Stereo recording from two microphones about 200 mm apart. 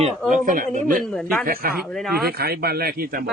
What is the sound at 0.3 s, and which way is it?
Speech, 45° right (ahead or behind).